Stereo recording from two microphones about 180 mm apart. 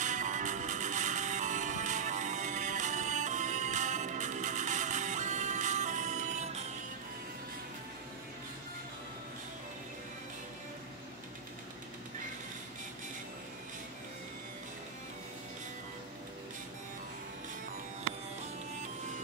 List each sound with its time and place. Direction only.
0.0 s music: 45° right (ahead or behind)